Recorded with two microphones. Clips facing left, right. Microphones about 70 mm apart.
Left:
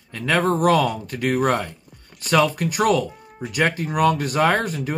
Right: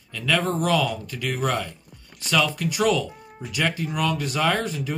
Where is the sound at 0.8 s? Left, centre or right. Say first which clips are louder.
Left 5 dB; left.